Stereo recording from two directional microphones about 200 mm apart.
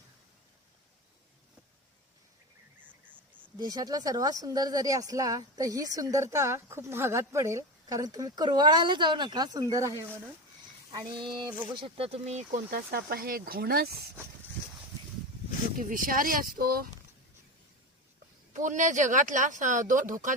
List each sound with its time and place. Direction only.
2.7 s a sound: 10° right (ahead or behind)
3.6 s speech: 20° right (ahead or behind)
10.9 s a sound: 25° right (ahead or behind)
11.7 s speech: 25° right (ahead or behind); by 13.9 s 50° right (ahead or behind)
15.8 s speech: 45° right (ahead or behind)
18.5 s speech: 40° right (ahead or behind)